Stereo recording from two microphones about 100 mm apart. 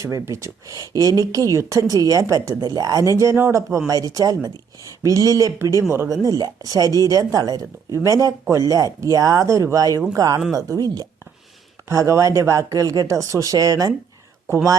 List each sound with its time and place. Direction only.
0.0 s speech: 30° right (ahead or behind)
2.6 s speech: 40° right (ahead or behind)
14.4 s speech: 25° right (ahead or behind)